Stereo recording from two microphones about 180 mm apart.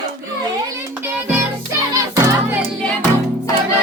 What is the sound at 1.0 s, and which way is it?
Music, 10° right (ahead or behind).